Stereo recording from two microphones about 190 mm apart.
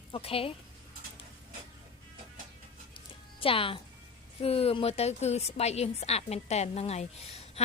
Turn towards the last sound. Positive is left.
turn(degrees=35)  # may be behind; listen again after turning